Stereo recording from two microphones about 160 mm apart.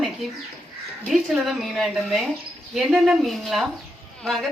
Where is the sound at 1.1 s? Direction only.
Centre (ahead or behind).